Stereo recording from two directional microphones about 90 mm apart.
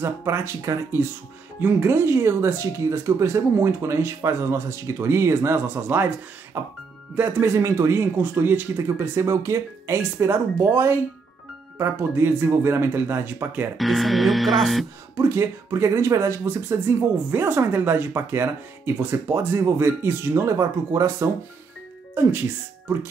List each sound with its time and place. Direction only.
0.0 s speech: 30° right (ahead or behind)
13.7 s speech: centre (ahead or behind)
15.1 s speech: 30° right (ahead or behind)